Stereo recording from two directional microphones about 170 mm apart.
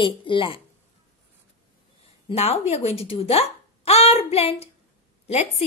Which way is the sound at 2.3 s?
40° left (ahead or behind).